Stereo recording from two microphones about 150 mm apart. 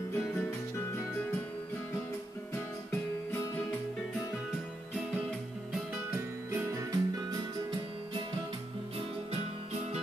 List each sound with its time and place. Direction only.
6.5 s music: 20° right (ahead or behind)